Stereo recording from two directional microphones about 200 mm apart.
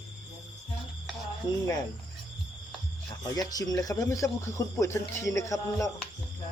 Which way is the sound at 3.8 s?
15° left (ahead or behind).